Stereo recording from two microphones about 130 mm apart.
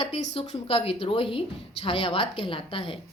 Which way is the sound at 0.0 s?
45° left (ahead or behind).